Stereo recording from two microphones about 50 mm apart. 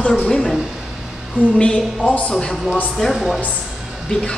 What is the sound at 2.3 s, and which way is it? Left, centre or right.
A woman's voice, centre.